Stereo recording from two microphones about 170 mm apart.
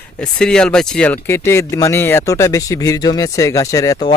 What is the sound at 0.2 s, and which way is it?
Speech, 5° left (ahead or behind).